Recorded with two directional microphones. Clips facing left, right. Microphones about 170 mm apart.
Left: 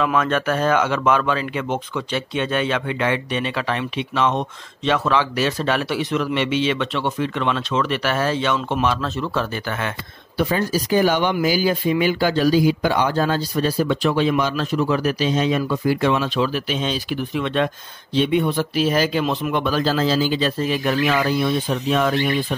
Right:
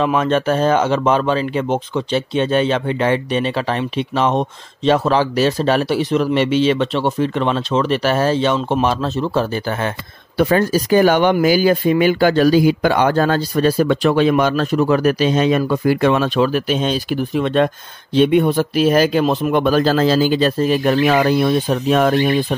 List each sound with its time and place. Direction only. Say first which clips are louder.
0.0 s speech: right 4 dB; 30° right (ahead or behind)
10.3 s speech: right 6 dB; 60° right (ahead or behind)